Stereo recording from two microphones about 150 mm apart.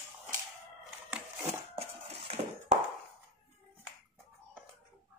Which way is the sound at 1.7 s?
40° right (ahead or behind).